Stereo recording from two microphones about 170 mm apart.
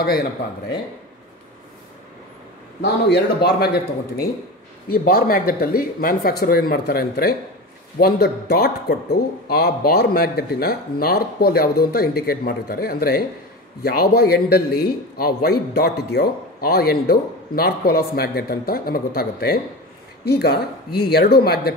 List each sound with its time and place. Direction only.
2.8 s a man's voice: 75° left (ahead or behind)